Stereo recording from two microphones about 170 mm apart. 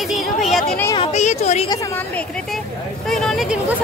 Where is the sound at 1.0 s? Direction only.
40° left (ahead or behind).